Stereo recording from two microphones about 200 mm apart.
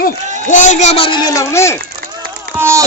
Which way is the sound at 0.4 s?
40° left (ahead or behind).